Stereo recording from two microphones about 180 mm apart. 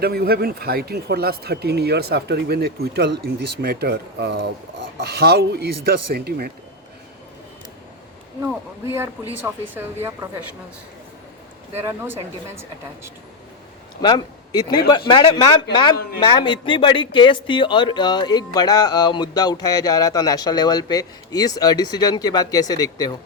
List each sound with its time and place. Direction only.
0.0 s speech: 60° right (ahead or behind)
9.4 s a woman's voice: 10° right (ahead or behind)
11.8 s a woman's voice: 15° right (ahead or behind)
14.0 s speech: 20° left (ahead or behind)